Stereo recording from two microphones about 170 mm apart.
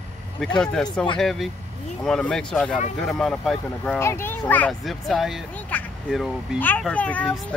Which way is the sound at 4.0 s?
15° left (ahead or behind).